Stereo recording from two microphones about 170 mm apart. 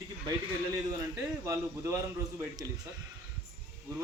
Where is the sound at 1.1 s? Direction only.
15° right (ahead or behind).